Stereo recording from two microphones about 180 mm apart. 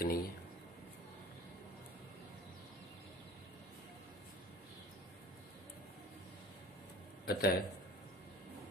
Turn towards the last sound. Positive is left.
turn(degrees=60)  # may be behind; listen again after turning